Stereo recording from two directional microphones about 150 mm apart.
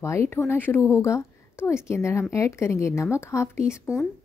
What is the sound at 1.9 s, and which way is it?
A woman's voice, 20° left (ahead or behind).